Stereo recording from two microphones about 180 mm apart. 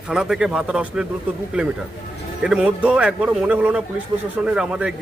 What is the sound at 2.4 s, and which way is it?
A man's voice, 5° right (ahead or behind).